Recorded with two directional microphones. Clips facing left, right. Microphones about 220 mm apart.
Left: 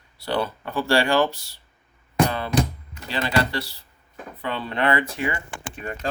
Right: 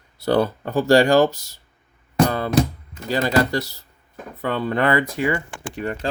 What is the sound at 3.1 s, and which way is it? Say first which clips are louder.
Speech: right 5 dB; 40° right (ahead or behind).